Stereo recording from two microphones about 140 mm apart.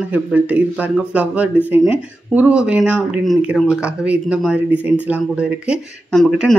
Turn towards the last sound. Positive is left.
turn(degrees=0)  # may be behind; listen again after turning